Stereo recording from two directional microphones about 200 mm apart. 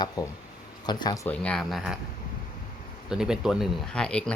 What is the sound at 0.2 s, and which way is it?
Speech, 20° left (ahead or behind).